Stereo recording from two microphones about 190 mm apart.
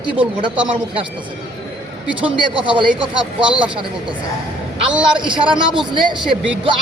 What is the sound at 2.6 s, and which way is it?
Speech, 25° right (ahead or behind).